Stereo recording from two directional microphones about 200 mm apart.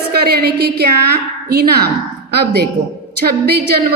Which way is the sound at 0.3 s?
50° right (ahead or behind).